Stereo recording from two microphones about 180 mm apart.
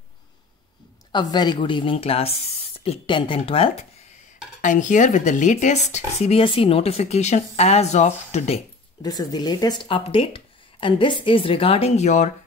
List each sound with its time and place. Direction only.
1.1 s speech: 20° left (ahead or behind)
4.6 s speech: 45° left (ahead or behind)
9.0 s speech: 20° left (ahead or behind); by 12.3 s 40° left (ahead or behind)